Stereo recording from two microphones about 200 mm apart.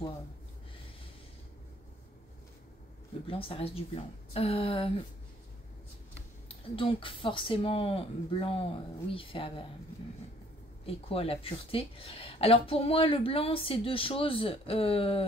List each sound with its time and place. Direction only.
3.3 s speech: 25° left (ahead or behind)
6.5 s speech: 25° left (ahead or behind)
10.9 s speech: 30° left (ahead or behind)